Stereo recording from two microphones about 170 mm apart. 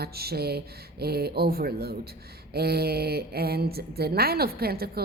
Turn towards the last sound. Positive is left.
turn(degrees=-65)  # may be behind; listen again after turning